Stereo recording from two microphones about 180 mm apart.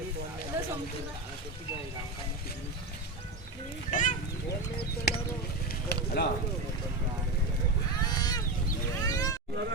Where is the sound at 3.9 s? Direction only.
45° left (ahead or behind).